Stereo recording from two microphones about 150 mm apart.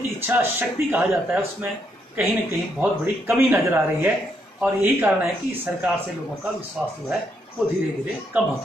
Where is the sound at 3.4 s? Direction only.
15° right (ahead or behind).